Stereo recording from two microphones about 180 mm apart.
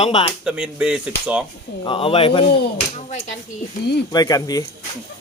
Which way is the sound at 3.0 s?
40° left (ahead or behind).